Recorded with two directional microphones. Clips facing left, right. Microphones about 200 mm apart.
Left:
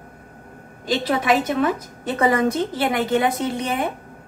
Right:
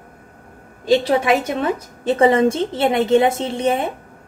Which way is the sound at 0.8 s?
30° right (ahead or behind).